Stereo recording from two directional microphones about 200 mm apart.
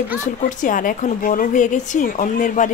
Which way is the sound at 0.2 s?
40° left (ahead or behind).